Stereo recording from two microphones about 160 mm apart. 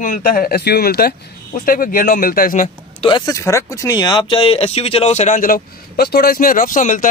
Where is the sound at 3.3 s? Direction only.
20° left (ahead or behind).